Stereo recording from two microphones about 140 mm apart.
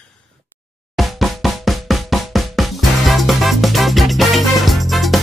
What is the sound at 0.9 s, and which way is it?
Music, centre (ahead or behind).